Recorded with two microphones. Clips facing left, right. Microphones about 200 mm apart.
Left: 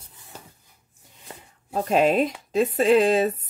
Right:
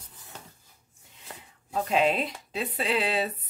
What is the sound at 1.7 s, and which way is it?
Speech, 45° left (ahead or behind).